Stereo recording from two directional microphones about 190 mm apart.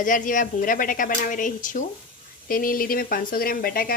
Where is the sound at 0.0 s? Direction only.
45° left (ahead or behind).